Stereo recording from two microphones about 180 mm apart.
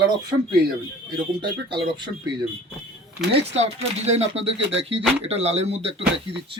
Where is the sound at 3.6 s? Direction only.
35° right (ahead or behind).